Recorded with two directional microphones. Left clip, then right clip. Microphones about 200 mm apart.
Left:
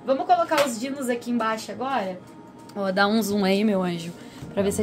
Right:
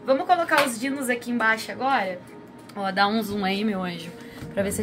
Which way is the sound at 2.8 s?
60° left (ahead or behind).